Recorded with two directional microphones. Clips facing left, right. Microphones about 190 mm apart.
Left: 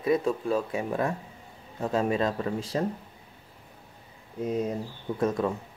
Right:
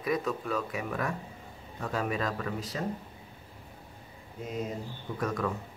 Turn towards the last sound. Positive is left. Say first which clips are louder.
# left 5 dB
turn(degrees=25)  # may be behind; listen again after turning